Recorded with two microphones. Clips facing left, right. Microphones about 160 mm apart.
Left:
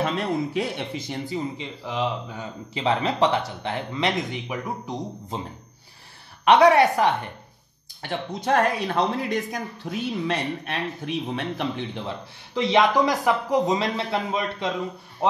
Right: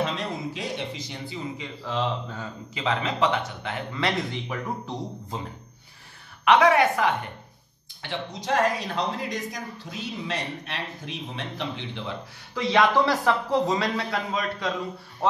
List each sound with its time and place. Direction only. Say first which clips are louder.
0.0 s speech: left 4 dB; 55° left (ahead or behind)
1.9 s speech: left 1 dB; 15° left (ahead or behind)
2.7 s speech: left 4 dB; 30° left (ahead or behind)
3.9 s speech: left 1 dB; 15° left (ahead or behind)
6.4 s speech: left 3 dB; 35° left (ahead or behind)
8.0 s speech: left 4 dB; 50° left (ahead or behind)
11.3 s speech: left 5 dB; 50° left (ahead or behind)
12.5 s speech: left 2 dB; 20° left (ahead or behind)